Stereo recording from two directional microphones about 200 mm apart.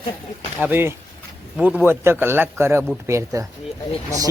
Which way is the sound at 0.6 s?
10° right (ahead or behind).